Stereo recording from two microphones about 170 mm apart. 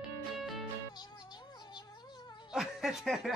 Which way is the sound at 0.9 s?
25° left (ahead or behind).